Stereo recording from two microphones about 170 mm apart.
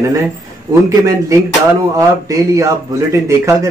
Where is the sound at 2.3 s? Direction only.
20° right (ahead or behind).